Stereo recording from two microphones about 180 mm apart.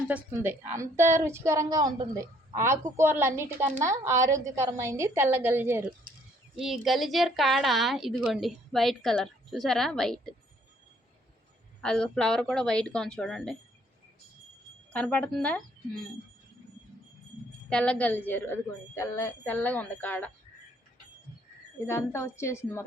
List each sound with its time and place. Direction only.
0.1 s a woman's voice: 10° right (ahead or behind)
6.6 s a woman's voice: centre (ahead or behind)
11.8 s a woman's voice: 5° left (ahead or behind)
14.9 s a woman's voice: 10° left (ahead or behind)
17.7 s a woman's voice: 5° left (ahead or behind)
21.8 s a woman's voice: 15° left (ahead or behind)